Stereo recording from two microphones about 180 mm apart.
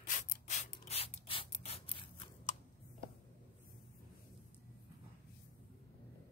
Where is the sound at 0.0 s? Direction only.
40° left (ahead or behind).